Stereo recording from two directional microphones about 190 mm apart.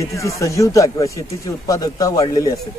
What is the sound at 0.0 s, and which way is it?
Speech, 15° left (ahead or behind).